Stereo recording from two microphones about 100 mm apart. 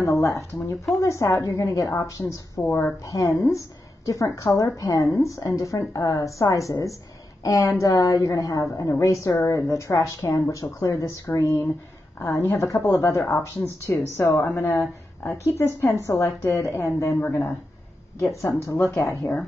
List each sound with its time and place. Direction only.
0.0 s a woman's voice: 30° left (ahead or behind)